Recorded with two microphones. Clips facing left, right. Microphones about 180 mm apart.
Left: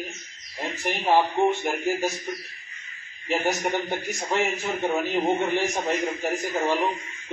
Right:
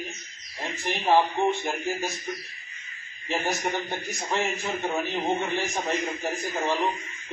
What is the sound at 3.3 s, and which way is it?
Speech, 15° left (ahead or behind).